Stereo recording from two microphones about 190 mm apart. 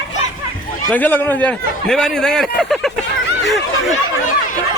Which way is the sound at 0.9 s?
10° left (ahead or behind).